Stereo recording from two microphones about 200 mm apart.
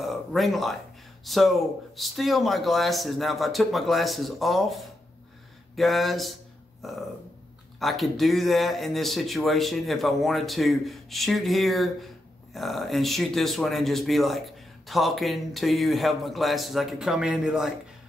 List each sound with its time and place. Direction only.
0.0 s speech: centre (ahead or behind)
6.8 s a sound: centre (ahead or behind)
7.8 s speech: centre (ahead or behind)